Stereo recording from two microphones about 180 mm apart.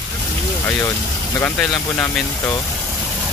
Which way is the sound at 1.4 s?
10° left (ahead or behind).